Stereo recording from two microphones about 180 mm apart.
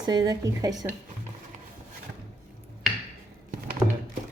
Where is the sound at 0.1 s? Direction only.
20° right (ahead or behind).